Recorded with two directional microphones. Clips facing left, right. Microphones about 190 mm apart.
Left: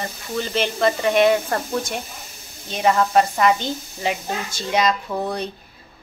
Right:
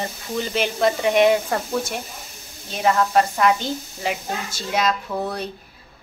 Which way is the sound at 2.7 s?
Centre (ahead or behind).